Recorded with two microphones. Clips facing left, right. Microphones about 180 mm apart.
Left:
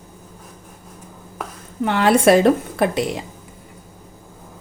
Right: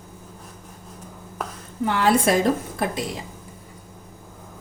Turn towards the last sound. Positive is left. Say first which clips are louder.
# left 7 dB
turn(degrees=70)  # may be behind; listen again after turning